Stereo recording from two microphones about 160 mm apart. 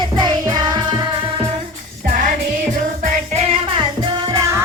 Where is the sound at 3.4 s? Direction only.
35° right (ahead or behind).